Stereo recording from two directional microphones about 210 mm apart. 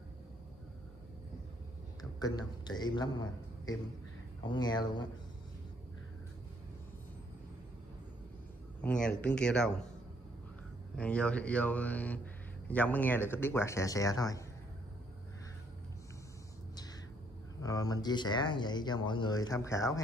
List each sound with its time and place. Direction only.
2.0 s a man's voice: 20° left (ahead or behind)
8.8 s speech: 5° left (ahead or behind)
11.0 s speech: 5° left (ahead or behind)
17.6 s speech: 15° left (ahead or behind)